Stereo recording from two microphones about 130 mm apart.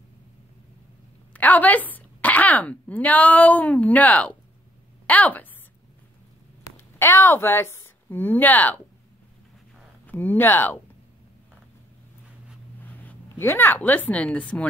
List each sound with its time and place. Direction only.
1.3 s a woman's voice: 10° left (ahead or behind)
6.6 s a woman's voice: 20° left (ahead or behind)
10.0 s speech: 15° left (ahead or behind)
12.8 s speech: 15° left (ahead or behind)